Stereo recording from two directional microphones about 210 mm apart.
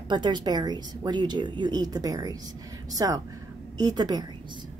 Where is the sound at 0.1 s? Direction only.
20° right (ahead or behind).